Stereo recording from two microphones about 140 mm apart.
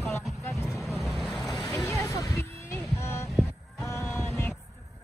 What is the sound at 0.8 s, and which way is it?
Vehicle, centre (ahead or behind).